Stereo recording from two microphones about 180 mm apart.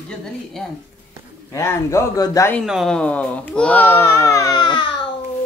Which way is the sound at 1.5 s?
15° left (ahead or behind).